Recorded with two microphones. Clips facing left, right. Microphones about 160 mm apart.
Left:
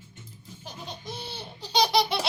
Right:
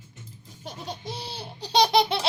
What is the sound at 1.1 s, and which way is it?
Baby laughter, 35° right (ahead or behind).